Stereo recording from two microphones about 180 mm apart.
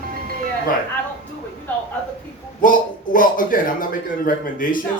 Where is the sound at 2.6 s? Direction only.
50° left (ahead or behind).